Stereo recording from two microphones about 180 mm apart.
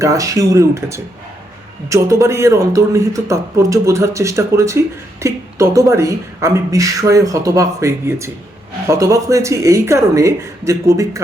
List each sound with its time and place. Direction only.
0.0 s a woman's voice: 20° right (ahead or behind)